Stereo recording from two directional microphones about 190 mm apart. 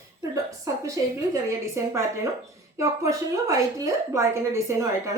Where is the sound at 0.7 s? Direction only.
20° right (ahead or behind).